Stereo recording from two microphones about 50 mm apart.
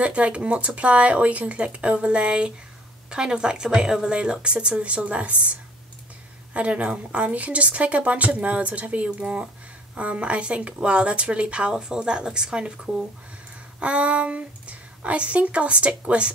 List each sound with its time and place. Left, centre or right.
0.0 s speech: right
6.5 s a woman's voice: right